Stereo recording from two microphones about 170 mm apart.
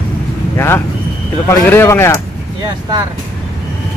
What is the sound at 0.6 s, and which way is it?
Speech, 15° left (ahead or behind).